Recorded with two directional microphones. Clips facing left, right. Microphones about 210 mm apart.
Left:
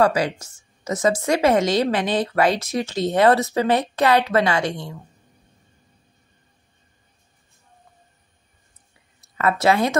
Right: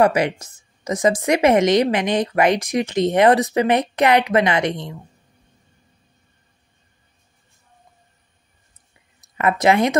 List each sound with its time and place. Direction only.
0.0 s a woman's voice: 20° right (ahead or behind)
9.4 s speech: 20° right (ahead or behind)